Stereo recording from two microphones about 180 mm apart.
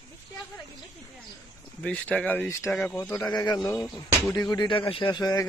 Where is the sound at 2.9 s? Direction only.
15° left (ahead or behind).